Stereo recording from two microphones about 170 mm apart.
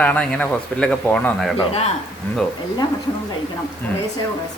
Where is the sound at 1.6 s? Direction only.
40° left (ahead or behind).